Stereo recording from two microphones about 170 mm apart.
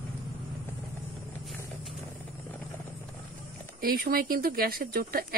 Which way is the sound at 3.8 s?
60° right (ahead or behind).